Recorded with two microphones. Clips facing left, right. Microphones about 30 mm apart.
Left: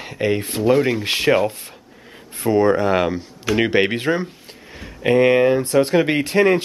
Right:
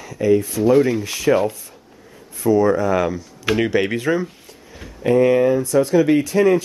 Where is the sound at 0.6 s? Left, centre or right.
Left.